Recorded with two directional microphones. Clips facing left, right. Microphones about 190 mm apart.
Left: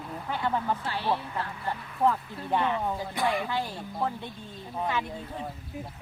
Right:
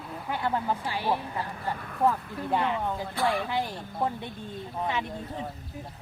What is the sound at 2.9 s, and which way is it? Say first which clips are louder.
Speech: right 1 dB; 15° left (ahead or behind).